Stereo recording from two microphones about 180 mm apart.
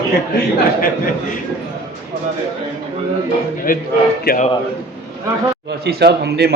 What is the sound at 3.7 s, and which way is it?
Speech, 50° left (ahead or behind).